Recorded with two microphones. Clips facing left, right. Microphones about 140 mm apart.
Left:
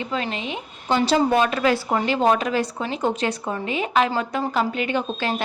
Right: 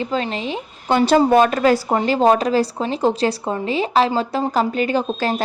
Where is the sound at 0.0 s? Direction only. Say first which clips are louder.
Right 4 dB; 35° right (ahead or behind).